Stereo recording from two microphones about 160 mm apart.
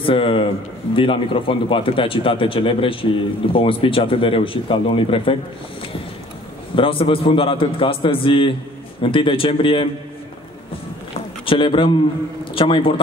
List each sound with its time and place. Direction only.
0.0 s speech: 35° left (ahead or behind)
6.7 s speech: 35° left (ahead or behind)
11.4 s speech: 30° left (ahead or behind)